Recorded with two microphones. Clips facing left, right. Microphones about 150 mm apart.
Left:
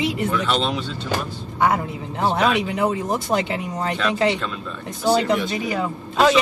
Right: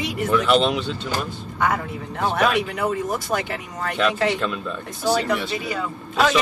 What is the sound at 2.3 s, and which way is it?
Speech, 20° left (ahead or behind).